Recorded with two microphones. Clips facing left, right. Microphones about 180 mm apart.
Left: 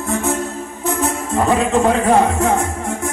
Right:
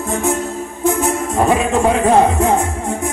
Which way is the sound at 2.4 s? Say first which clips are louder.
Right 2 dB; 25° right (ahead or behind).